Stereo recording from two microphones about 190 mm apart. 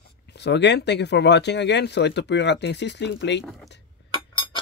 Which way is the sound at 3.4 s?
Centre (ahead or behind).